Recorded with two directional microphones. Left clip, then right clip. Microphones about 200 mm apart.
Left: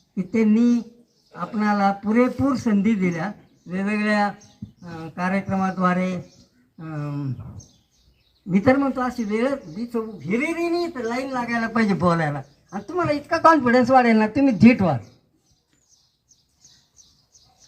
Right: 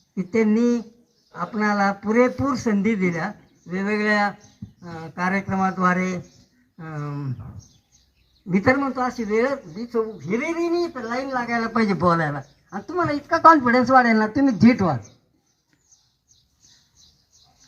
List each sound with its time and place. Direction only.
0.1 s speech: 30° right (ahead or behind)
8.4 s speech: 25° right (ahead or behind); by 15.0 s 20° left (ahead or behind)